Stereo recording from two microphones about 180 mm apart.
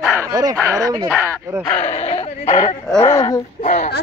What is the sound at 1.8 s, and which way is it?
Speech, 35° left (ahead or behind).